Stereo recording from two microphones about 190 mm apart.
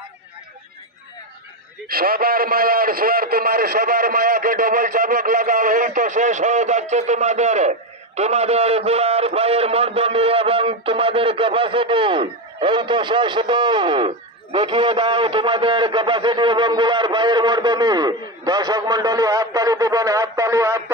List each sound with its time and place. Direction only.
1.9 s a man's voice: 50° right (ahead or behind); by 20.8 s 15° right (ahead or behind)